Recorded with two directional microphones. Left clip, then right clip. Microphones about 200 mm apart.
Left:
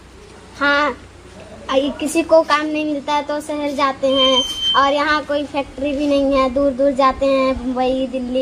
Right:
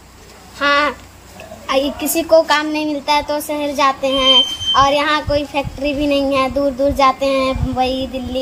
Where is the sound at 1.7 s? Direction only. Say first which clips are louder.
Right 1 dB; 15° left (ahead or behind).